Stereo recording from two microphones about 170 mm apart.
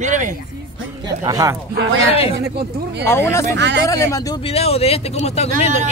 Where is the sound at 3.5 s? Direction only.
90° right.